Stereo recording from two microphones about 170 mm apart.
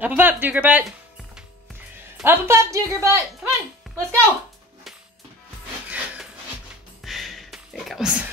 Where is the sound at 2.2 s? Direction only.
15° right (ahead or behind).